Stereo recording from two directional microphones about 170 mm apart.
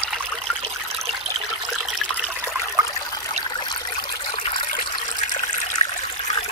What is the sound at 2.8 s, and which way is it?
Trickle, 20° right (ahead or behind).